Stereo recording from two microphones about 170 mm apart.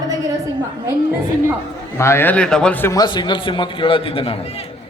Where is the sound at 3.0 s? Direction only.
25° left (ahead or behind).